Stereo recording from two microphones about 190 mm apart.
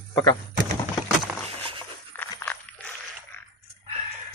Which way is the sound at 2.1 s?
10° left (ahead or behind).